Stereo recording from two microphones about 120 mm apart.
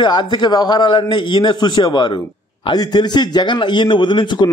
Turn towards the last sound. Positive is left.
turn(degrees=40)  # may be behind; listen again after turning